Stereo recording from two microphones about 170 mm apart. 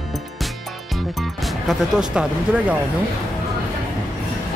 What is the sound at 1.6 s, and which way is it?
Speech, 5° right (ahead or behind).